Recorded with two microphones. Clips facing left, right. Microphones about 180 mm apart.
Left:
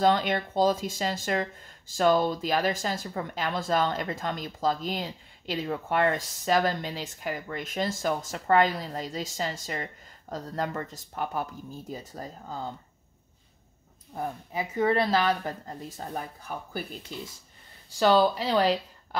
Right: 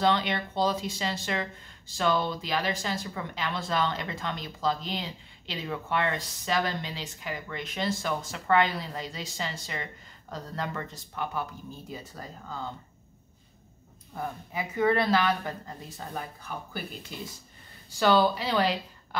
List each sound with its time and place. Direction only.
0.0 s speech: 45° left (ahead or behind)
14.1 s speech: 35° left (ahead or behind)
17.9 s speech: 35° left (ahead or behind)